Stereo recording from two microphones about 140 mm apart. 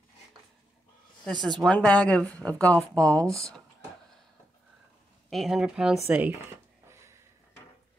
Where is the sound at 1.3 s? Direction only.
30° right (ahead or behind).